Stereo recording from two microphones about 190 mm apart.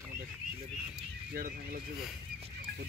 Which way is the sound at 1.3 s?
50° right (ahead or behind).